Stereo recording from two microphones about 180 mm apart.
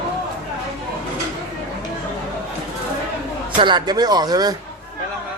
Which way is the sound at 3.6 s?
25° right (ahead or behind).